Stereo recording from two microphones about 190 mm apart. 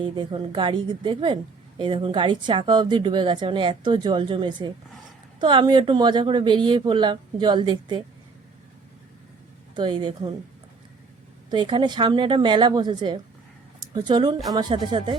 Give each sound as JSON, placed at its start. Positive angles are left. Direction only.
{"t": 0.0, "sound": "a woman's voice", "side_deg": -25}
{"t": 9.7, "sound": "a woman's voice", "side_deg": -25}
{"t": 11.5, "sound": "a woman's voice", "side_deg": -25}